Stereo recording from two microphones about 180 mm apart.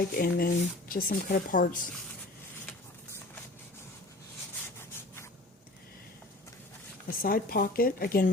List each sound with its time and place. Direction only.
0.2 s speech: 55° left (ahead or behind)
7.1 s speech: 55° left (ahead or behind)